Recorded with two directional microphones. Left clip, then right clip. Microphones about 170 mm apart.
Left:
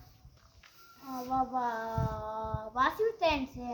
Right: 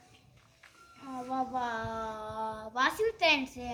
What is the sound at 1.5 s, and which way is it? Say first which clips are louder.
Child singing: left 1 dB; centre (ahead or behind).